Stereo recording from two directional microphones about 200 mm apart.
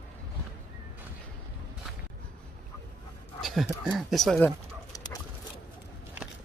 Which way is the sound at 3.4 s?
Centre (ahead or behind).